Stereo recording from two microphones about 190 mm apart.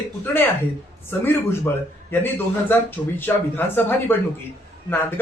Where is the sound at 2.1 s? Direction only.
10° left (ahead or behind).